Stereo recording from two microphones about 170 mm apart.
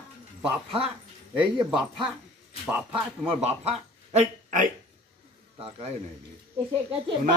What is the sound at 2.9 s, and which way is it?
Speech, 30° right (ahead or behind).